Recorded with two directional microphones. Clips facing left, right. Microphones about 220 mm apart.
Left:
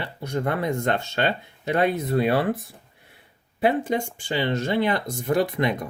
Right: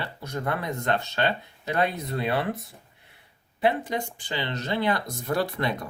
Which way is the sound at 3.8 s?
25° left (ahead or behind).